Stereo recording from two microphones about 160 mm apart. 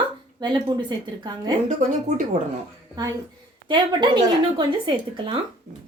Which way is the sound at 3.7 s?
30° right (ahead or behind).